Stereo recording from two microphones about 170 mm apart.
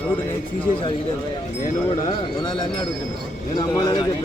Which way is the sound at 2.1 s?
25° left (ahead or behind).